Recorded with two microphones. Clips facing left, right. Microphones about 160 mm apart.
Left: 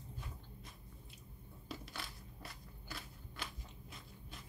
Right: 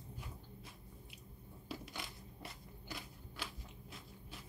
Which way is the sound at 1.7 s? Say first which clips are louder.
Right 1 dB; 20° right (ahead or behind).